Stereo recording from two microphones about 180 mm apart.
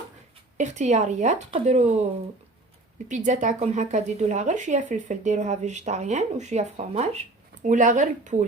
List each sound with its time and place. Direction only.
0.5 s speech: 40° right (ahead or behind)
3.1 s speech: 40° right (ahead or behind)